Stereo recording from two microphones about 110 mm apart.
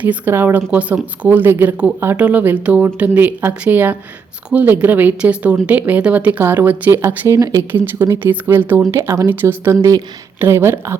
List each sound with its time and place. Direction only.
0.0 s speech: 15° right (ahead or behind)
7.3 s speech: 30° right (ahead or behind)